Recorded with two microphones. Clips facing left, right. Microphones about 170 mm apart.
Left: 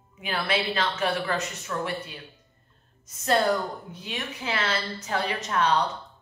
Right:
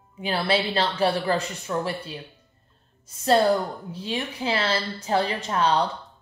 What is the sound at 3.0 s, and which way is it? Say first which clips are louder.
A woman's voice: right 4 dB; 30° right (ahead or behind).